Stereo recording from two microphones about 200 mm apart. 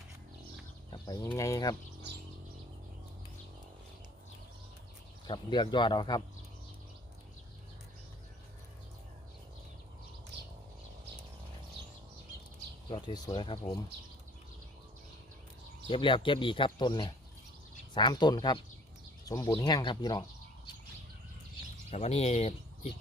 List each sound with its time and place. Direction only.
0.9 s a sound: 20° left (ahead or behind)
1.3 s speech: 15° left (ahead or behind)
5.3 s speech: 25° left (ahead or behind)
12.9 s speech: 25° left (ahead or behind)
15.9 s speech: 25° left (ahead or behind)
21.8 s speech: 30° left (ahead or behind)